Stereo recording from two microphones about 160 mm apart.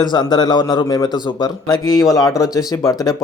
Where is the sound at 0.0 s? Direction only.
25° left (ahead or behind).